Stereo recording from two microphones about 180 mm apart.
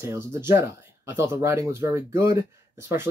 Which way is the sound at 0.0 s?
15° right (ahead or behind).